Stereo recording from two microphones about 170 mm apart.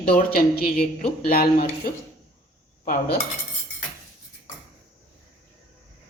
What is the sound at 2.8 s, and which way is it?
Speech, 60° left (ahead or behind).